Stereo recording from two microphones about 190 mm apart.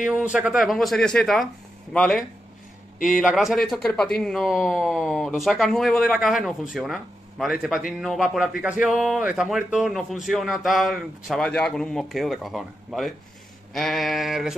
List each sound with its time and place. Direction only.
0.0 s speech: 5° right (ahead or behind)